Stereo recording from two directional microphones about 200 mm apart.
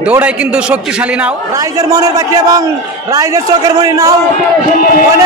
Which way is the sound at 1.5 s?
15° right (ahead or behind).